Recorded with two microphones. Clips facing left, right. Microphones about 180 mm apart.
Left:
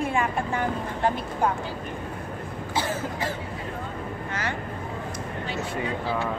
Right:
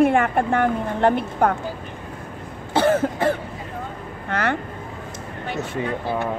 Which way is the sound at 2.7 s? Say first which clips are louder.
Right 11 dB; 60° right (ahead or behind).